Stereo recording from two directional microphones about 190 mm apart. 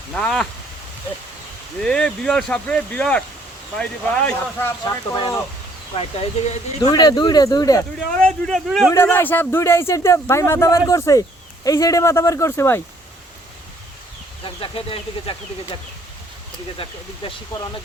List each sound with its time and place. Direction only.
0.1 s speech: 5° left (ahead or behind)
1.8 s speech: 5° left (ahead or behind)
6.0 s speech: 30° left (ahead or behind)
6.9 s speech: 20° left (ahead or behind)
8.1 s speech: 5° left (ahead or behind)
14.4 s speech: 30° left (ahead or behind)